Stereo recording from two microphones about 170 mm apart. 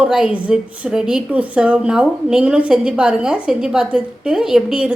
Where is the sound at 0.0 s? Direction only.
5° right (ahead or behind).